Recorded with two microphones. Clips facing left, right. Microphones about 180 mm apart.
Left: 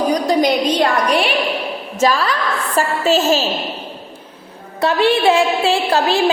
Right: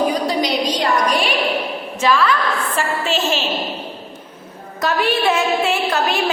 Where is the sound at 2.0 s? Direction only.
40° left (ahead or behind).